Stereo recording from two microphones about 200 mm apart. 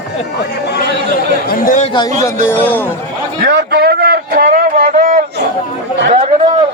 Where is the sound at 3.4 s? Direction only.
55° right (ahead or behind); by 6.5 s 35° right (ahead or behind).